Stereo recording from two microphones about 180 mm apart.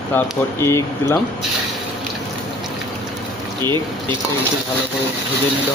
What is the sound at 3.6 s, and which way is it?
Speech, 25° right (ahead or behind).